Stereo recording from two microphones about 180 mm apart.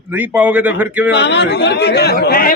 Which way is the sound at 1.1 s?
70° left (ahead or behind).